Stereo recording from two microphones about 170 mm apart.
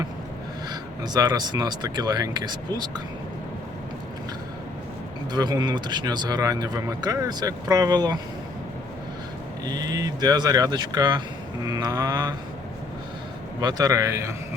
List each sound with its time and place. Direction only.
0.7 s speech: 25° right (ahead or behind)
5.3 s speech: 25° right (ahead or behind)
9.6 s speech: 25° right (ahead or behind)
13.6 s speech: 20° right (ahead or behind)